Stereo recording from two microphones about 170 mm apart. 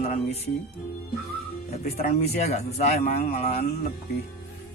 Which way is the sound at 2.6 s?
40° left (ahead or behind).